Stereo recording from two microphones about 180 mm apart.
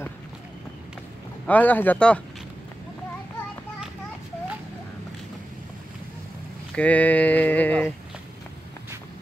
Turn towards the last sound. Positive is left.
turn(degrees=10)  # may be behind; listen again after turning